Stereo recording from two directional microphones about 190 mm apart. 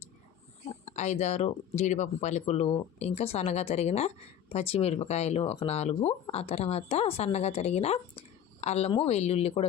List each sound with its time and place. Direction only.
0.7 s speech: 35° left (ahead or behind)